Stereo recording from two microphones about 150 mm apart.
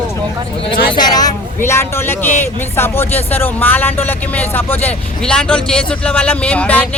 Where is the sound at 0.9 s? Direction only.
25° left (ahead or behind).